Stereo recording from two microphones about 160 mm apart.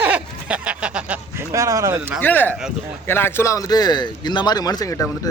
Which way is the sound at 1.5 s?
20° right (ahead or behind).